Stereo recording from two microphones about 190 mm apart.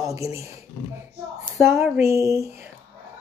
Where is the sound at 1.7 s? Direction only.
15° right (ahead or behind).